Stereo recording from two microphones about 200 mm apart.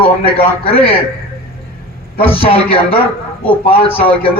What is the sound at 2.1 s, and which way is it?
Speech, 30° left (ahead or behind).